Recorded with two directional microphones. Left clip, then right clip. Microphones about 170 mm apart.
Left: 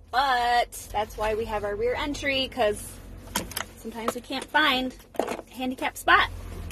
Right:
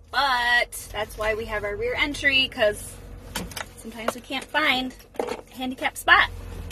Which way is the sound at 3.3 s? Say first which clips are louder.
Left 1 dB; 50° left (ahead or behind).